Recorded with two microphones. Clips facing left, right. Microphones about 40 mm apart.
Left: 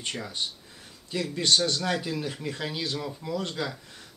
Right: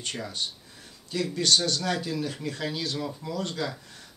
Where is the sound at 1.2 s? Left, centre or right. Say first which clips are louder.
Even; centre.